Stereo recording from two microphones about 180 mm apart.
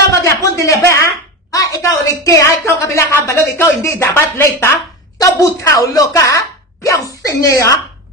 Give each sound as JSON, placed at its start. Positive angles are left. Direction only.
{"t": 0.1, "sound": "a woman's voice", "side_deg": 15}